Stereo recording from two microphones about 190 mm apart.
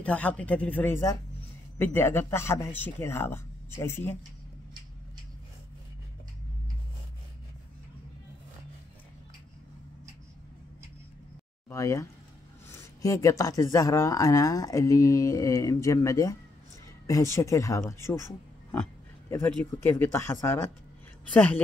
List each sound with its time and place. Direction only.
0.0 s speech: 10° left (ahead or behind)
11.7 s speech: 15° left (ahead or behind)